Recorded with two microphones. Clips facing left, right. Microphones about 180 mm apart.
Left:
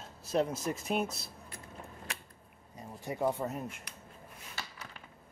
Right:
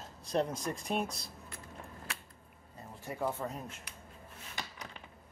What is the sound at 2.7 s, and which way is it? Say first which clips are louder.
Speech: left 3 dB; 15° left (ahead or behind).